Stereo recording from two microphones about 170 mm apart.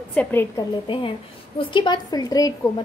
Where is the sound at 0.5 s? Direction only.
30° left (ahead or behind).